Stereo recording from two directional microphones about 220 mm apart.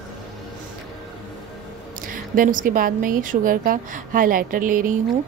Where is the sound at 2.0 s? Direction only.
40° right (ahead or behind).